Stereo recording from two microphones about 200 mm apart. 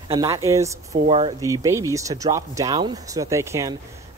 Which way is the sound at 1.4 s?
15° right (ahead or behind).